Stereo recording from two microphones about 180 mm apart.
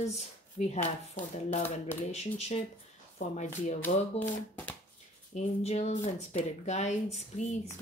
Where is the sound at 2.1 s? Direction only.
35° left (ahead or behind).